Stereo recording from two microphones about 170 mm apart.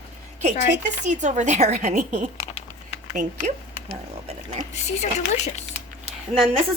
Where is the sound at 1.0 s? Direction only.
45° right (ahead or behind).